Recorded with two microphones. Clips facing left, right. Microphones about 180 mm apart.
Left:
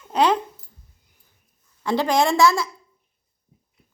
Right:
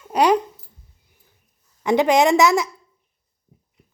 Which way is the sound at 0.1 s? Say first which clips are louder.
Right 2 dB; 10° right (ahead or behind).